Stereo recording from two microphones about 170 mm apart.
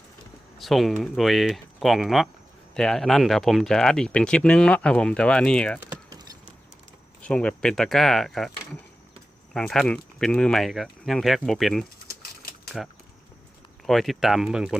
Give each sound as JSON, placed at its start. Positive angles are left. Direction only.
{"t": 0.6, "sound": "speech", "side_deg": 0}
{"t": 5.9, "sound": "a sound", "side_deg": -25}
{"t": 7.2, "sound": "speech", "side_deg": 5}